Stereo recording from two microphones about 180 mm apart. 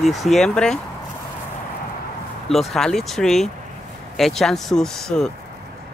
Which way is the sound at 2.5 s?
Centre (ahead or behind).